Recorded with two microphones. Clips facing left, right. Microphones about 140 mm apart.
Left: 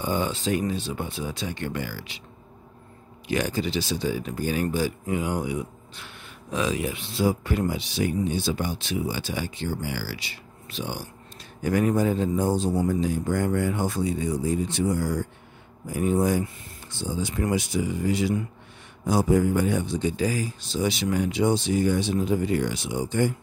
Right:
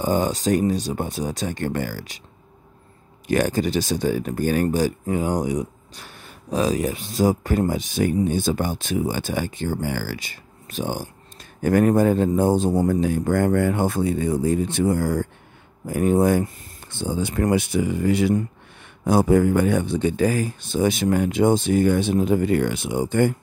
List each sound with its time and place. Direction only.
0.0 s speech: 40° right (ahead or behind)
3.3 s speech: 50° right (ahead or behind)